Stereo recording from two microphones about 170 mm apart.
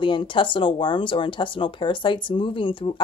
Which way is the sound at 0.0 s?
30° left (ahead or behind).